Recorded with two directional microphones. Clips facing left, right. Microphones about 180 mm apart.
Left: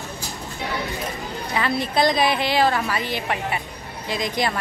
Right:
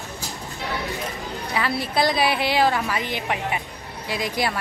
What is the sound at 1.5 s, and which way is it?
A woman's voice, 5° right (ahead or behind).